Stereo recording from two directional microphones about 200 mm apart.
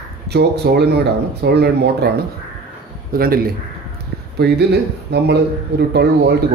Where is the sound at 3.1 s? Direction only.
45° right (ahead or behind).